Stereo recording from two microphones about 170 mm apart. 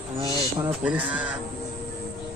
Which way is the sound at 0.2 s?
20° left (ahead or behind).